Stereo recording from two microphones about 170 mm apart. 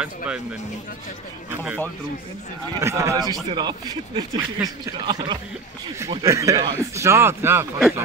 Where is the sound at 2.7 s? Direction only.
15° right (ahead or behind).